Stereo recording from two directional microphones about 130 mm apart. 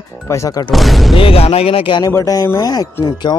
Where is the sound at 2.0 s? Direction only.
25° left (ahead or behind).